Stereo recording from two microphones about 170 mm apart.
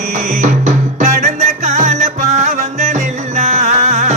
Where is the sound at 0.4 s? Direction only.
45° right (ahead or behind).